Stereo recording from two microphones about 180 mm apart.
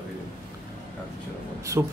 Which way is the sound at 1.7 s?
15° right (ahead or behind).